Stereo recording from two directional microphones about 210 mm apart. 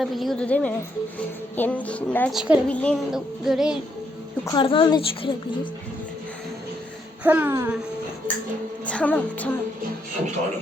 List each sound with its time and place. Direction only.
0.0 s a woman's voice: centre (ahead or behind)
4.4 s a woman's voice: 25° left (ahead or behind)
7.3 s a child's voice: 10° right (ahead or behind)
8.9 s music: 5° left (ahead or behind)